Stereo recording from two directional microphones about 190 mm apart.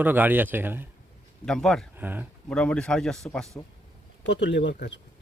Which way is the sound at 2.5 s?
5° left (ahead or behind).